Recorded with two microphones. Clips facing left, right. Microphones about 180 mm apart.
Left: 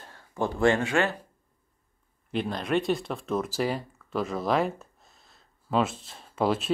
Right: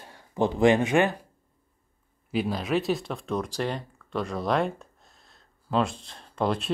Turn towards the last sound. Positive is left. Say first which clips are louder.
# left 1 dB
turn(degrees=0)  # may be behind; listen again after turning